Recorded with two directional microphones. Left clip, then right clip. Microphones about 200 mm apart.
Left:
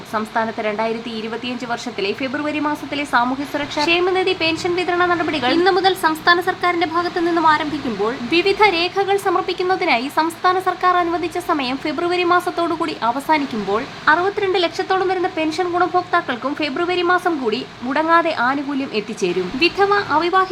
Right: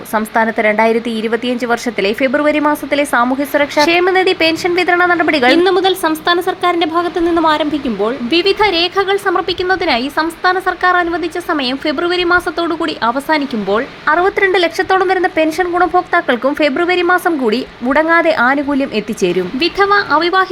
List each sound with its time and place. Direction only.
0.1 s a woman's voice: 25° right (ahead or behind)